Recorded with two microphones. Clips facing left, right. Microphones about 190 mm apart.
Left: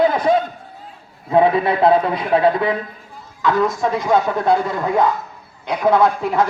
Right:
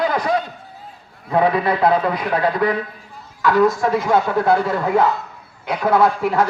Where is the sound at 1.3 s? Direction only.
25° left (ahead or behind).